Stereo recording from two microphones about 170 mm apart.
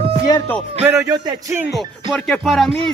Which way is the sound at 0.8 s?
15° right (ahead or behind).